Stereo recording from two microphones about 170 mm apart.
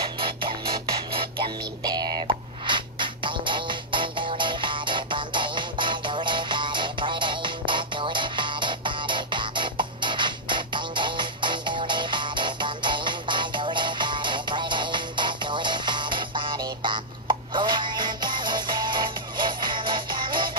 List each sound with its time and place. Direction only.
0.2 s music: 30° right (ahead or behind)